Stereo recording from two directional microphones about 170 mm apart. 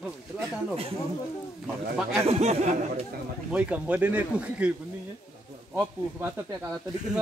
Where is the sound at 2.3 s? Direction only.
40° right (ahead or behind).